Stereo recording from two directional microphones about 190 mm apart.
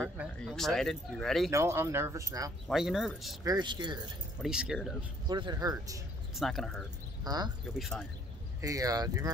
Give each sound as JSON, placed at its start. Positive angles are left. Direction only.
{"t": 0.0, "sound": "speech", "side_deg": 0}
{"t": 1.5, "sound": "speech", "side_deg": -15}
{"t": 2.7, "sound": "speech", "side_deg": 0}
{"t": 3.4, "sound": "speech", "side_deg": -20}
{"t": 4.4, "sound": "speech", "side_deg": -5}
{"t": 5.3, "sound": "speech", "side_deg": -25}
{"t": 6.3, "sound": "speech", "side_deg": 0}
{"t": 7.2, "sound": "speech", "side_deg": -20}
{"t": 8.5, "sound": "speech", "side_deg": -15}